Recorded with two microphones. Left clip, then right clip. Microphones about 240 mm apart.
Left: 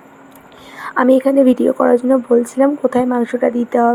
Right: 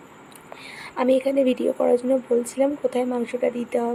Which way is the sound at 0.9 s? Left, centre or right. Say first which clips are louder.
Left 8 dB; left.